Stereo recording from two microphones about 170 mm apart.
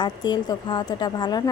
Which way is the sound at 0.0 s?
25° left (ahead or behind).